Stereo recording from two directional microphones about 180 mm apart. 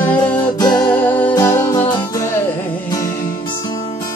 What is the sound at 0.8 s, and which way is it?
Music, 10° left (ahead or behind).